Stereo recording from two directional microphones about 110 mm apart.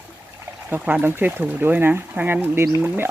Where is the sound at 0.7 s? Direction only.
15° right (ahead or behind).